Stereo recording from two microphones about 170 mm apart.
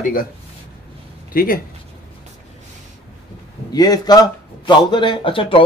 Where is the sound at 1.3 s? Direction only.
60° left (ahead or behind).